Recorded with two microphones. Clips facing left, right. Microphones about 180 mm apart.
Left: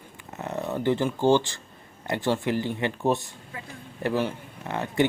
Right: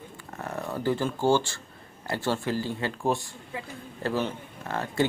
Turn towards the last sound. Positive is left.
turn(degrees=20)  # may be behind; listen again after turning